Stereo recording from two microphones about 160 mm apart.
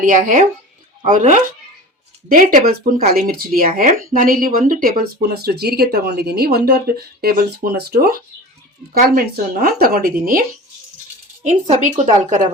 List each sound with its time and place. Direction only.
0.0 s speech: 55° right (ahead or behind); by 8.2 s 75° right (ahead or behind)
9.0 s speech: 65° right (ahead or behind)
11.4 s speech: 50° right (ahead or behind)